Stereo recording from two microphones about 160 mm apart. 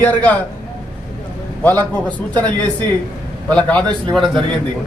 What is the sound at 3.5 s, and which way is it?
Speech, 5° left (ahead or behind).